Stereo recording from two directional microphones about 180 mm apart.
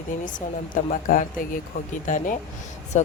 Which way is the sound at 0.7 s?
45° left (ahead or behind).